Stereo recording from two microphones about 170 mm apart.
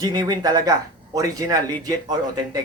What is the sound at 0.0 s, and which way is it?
A man's voice, 25° right (ahead or behind).